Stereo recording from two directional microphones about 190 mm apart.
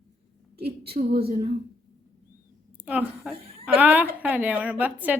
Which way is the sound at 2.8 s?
5° right (ahead or behind).